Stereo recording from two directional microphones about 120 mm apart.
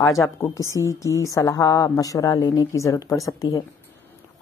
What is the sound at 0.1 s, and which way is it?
A woman's voice, 25° left (ahead or behind).